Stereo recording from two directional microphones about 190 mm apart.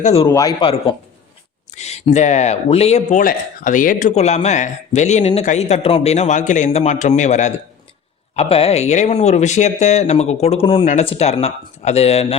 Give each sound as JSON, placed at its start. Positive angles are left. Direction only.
{"t": 0.0, "sound": "speech", "side_deg": 30}
{"t": 0.3, "sound": "a man's voice", "side_deg": 20}
{"t": 1.7, "sound": "speech", "side_deg": 35}